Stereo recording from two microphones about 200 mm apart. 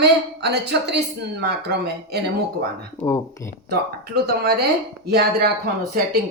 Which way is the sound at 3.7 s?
50° right (ahead or behind).